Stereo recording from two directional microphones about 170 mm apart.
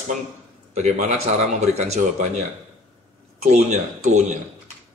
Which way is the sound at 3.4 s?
40° right (ahead or behind).